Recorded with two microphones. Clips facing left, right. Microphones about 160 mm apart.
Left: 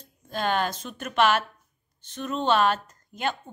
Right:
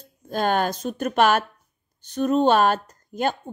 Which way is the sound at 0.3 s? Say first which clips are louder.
Right 4 dB; 45° right (ahead or behind).